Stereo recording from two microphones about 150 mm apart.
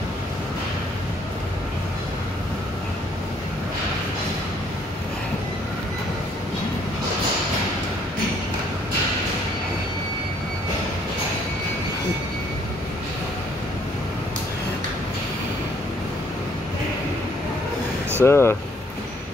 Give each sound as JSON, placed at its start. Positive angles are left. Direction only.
{"t": 18.2, "sound": "speech", "side_deg": 15}